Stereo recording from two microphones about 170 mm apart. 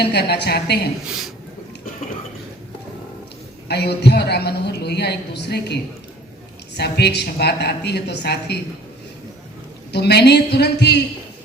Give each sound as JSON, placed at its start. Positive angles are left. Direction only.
{"t": 0.0, "sound": "a woman's voice", "side_deg": 75}
{"t": 3.7, "sound": "a woman's voice", "side_deg": 75}
{"t": 9.9, "sound": "a woman's voice", "side_deg": 75}